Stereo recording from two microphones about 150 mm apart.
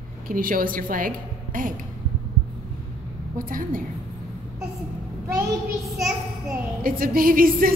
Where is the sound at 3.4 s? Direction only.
65° right (ahead or behind).